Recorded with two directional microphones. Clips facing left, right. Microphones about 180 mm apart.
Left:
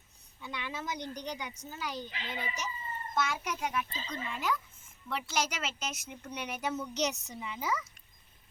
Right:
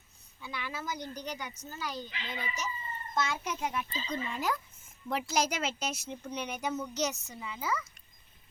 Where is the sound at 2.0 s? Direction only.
35° left (ahead or behind).